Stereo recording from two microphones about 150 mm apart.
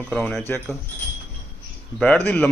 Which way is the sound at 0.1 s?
5° left (ahead or behind).